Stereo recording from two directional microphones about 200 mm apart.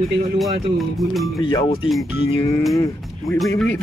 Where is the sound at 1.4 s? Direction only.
20° left (ahead or behind).